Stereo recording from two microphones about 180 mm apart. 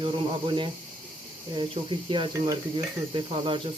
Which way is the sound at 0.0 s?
30° right (ahead or behind).